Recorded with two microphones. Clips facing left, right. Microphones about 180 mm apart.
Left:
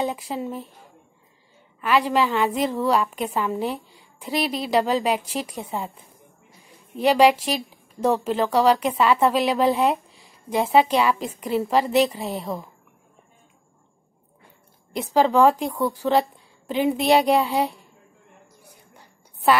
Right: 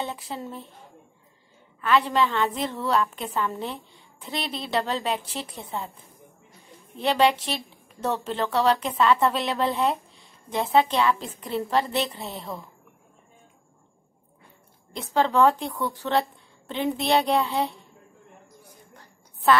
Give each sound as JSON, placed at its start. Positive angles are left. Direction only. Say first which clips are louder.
{"t": 0.0, "sound": "a woman's voice", "louder": "left 6 dB", "side_deg": 10}
{"t": 1.8, "sound": "a woman's voice", "louder": "left 2 dB", "side_deg": 10}
{"t": 7.0, "sound": "a woman's voice", "louder": "left 5 dB", "side_deg": 10}
{"t": 15.0, "sound": "a woman's voice", "louder": "left 3 dB", "side_deg": 10}
{"t": 15.7, "sound": "speech", "louder": "left 5 dB", "side_deg": 35}
{"t": 16.0, "sound": "a woman's voice", "louder": "left 3 dB", "side_deg": 10}
{"t": 18.9, "sound": "a sound", "louder": "even", "side_deg": 10}